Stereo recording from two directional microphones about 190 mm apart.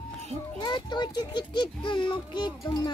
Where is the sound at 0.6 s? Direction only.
25° left (ahead or behind).